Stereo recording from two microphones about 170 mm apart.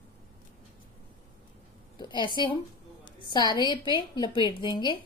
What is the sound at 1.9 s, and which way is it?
A woman's voice, 25° left (ahead or behind).